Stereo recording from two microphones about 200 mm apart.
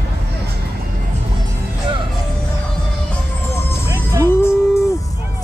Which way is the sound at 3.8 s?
15° right (ahead or behind).